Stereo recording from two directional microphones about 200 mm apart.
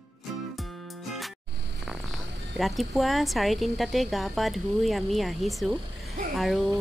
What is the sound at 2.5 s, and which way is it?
Speech, centre (ahead or behind).